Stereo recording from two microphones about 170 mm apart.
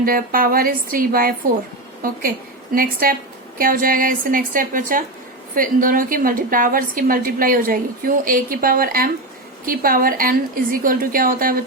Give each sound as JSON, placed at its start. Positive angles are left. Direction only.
{"t": 0.0, "sound": "a woman's voice", "side_deg": -55}